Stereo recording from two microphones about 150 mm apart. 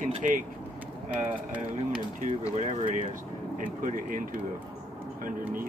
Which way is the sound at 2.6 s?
50° right (ahead or behind).